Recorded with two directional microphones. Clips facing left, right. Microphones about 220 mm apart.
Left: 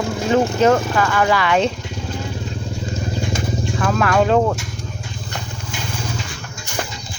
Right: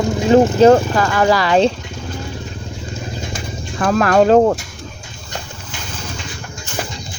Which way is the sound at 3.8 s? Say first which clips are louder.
Right 5 dB; 40° right (ahead or behind).